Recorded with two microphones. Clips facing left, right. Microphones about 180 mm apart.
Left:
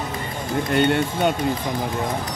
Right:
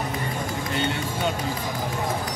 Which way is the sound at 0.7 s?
60° left (ahead or behind).